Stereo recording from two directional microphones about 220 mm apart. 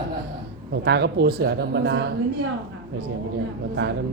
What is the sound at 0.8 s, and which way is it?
Speech, 50° right (ahead or behind).